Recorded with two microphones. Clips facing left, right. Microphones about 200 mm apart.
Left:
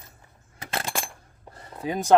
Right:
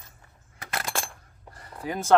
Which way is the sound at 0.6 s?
25° left (ahead or behind).